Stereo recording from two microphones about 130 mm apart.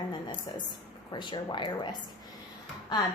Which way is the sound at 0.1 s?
35° left (ahead or behind).